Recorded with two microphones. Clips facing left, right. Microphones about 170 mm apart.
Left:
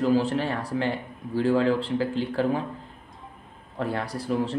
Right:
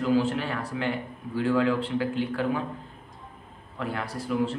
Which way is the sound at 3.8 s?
35° left (ahead or behind).